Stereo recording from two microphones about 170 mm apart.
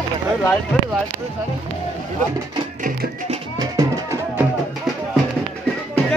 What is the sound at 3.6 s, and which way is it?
Music, 20° right (ahead or behind).